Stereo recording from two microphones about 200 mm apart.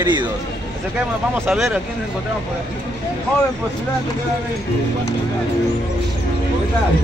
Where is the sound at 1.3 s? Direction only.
10° right (ahead or behind).